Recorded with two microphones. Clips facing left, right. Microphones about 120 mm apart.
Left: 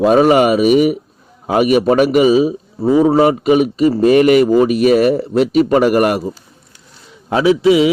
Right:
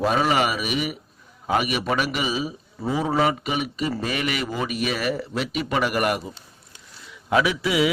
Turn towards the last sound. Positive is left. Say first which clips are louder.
# left 10 dB
turn(degrees=25)  # may be behind; listen again after turning